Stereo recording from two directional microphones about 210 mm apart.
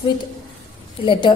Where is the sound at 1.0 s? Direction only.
25° left (ahead or behind).